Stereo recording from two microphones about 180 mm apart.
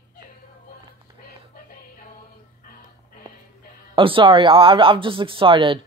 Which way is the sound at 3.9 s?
30° right (ahead or behind).